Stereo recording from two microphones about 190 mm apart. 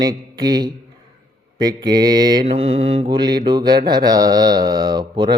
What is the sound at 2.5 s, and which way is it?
Mantra, 30° right (ahead or behind).